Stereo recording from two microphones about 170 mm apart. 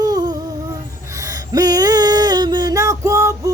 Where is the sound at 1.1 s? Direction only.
20° right (ahead or behind).